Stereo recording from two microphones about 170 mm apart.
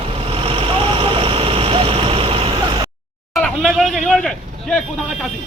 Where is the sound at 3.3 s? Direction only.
Centre (ahead or behind).